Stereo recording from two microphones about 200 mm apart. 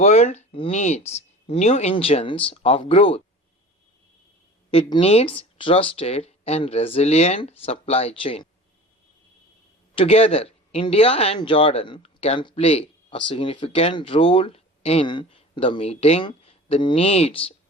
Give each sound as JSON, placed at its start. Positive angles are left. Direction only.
{"t": 0.0, "sound": "speech", "side_deg": 35}
{"t": 4.7, "sound": "speech", "side_deg": 30}
{"t": 9.9, "sound": "speech", "side_deg": 30}